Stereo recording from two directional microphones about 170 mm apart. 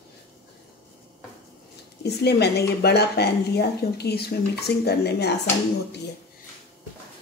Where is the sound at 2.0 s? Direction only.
75° left (ahead or behind).